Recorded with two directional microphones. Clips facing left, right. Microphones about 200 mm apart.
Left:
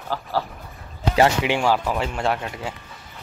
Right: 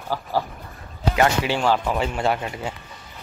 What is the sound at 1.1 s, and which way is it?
Speech, 25° left (ahead or behind).